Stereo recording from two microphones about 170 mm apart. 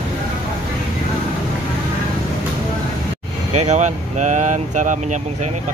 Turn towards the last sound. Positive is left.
turn(degrees=-45)  # may be behind; listen again after turning